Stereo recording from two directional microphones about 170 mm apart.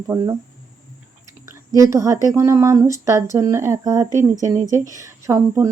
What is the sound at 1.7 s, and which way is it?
Speech, 20° right (ahead or behind).